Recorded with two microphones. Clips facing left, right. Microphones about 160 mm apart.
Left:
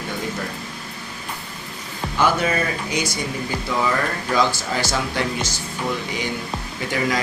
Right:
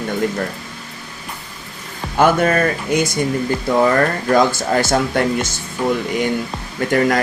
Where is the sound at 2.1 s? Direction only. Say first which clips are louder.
Right 6 dB; 50° right (ahead or behind).